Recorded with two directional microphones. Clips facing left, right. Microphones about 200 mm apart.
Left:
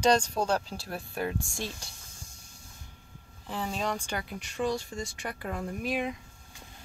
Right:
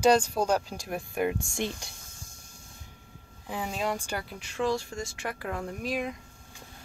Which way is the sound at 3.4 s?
10° right (ahead or behind).